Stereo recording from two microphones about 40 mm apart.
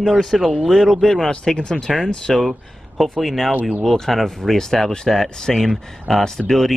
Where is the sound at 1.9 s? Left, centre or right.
Centre.